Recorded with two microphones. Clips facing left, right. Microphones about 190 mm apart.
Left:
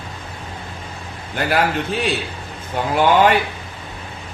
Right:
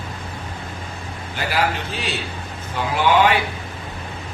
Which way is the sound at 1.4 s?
55° left (ahead or behind).